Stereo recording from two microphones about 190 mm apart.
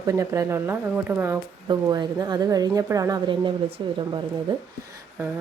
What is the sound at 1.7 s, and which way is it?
Speech, 20° right (ahead or behind).